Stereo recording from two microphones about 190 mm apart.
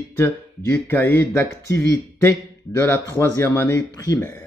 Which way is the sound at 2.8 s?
15° left (ahead or behind).